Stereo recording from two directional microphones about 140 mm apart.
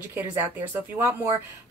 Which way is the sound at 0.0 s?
15° right (ahead or behind).